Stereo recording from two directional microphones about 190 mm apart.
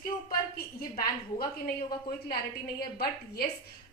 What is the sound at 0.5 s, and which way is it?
A woman's voice, 50° left (ahead or behind).